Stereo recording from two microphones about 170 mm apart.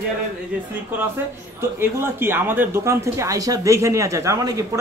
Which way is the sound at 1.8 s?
15° right (ahead or behind).